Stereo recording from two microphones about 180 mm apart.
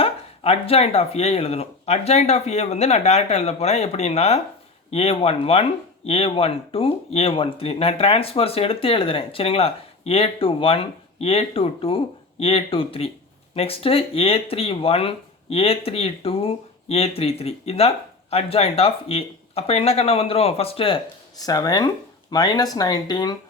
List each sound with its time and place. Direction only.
0.0 s speech: 35° left (ahead or behind)